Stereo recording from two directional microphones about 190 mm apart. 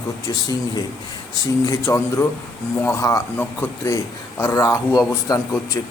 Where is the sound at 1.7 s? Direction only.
15° left (ahead or behind).